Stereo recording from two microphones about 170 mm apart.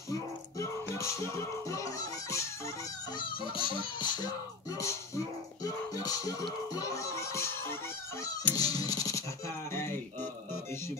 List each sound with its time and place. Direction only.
0.1 s music: 15° left (ahead or behind)
3.2 s a sound: 30° left (ahead or behind)
3.6 s music: 25° left (ahead or behind)